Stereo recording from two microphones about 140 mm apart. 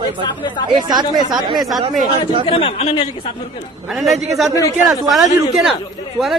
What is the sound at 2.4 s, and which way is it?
Speech, 40° left (ahead or behind).